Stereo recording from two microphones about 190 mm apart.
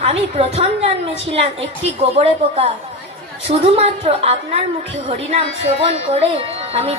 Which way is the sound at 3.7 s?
30° right (ahead or behind).